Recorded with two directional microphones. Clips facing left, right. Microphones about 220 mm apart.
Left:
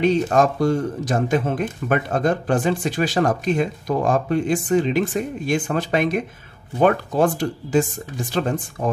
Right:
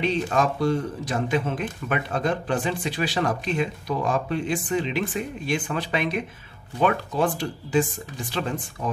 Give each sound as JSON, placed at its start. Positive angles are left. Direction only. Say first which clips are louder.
{"t": 0.0, "sound": "speech", "louder": "left 6 dB", "side_deg": 45}